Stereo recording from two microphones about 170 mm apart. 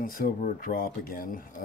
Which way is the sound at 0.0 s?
55° left (ahead or behind).